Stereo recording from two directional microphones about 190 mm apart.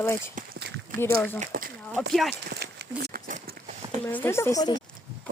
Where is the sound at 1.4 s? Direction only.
45° right (ahead or behind).